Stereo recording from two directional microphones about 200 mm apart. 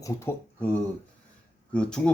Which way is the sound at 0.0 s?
10° left (ahead or behind).